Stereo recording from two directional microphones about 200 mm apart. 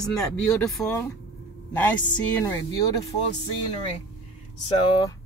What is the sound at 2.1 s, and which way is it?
Speech, 10° left (ahead or behind).